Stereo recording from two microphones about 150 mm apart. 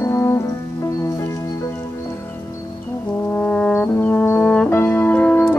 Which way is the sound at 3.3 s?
5° left (ahead or behind).